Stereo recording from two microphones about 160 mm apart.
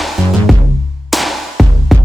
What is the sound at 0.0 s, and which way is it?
Music, centre (ahead or behind).